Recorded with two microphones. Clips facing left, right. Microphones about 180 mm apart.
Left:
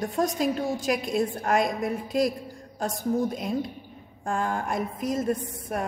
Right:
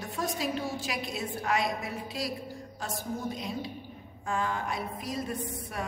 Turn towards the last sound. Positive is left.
turn(degrees=50)  # may be behind; listen again after turning